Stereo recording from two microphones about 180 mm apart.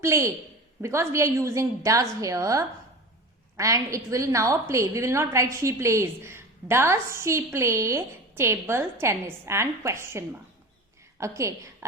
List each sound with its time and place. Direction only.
0.0 s a woman's voice: 15° right (ahead or behind)